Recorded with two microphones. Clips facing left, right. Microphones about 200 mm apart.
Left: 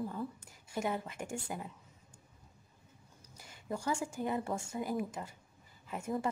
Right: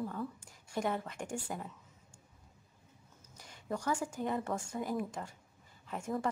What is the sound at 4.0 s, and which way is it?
A woman's voice, 10° left (ahead or behind).